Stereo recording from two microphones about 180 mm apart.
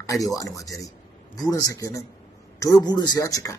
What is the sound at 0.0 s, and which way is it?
A man's voice, 20° left (ahead or behind).